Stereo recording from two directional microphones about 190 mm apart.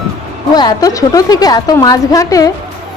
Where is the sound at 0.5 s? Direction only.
20° left (ahead or behind).